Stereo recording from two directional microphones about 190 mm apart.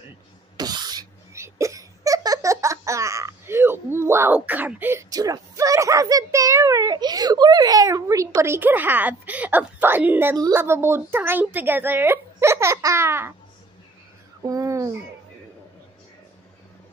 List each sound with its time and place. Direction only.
0.6 s speech: 20° right (ahead or behind)
14.4 s speech: 20° right (ahead or behind)